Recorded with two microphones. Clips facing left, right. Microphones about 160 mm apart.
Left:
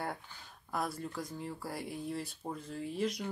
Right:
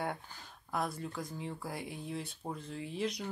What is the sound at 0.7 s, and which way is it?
Speech, centre (ahead or behind).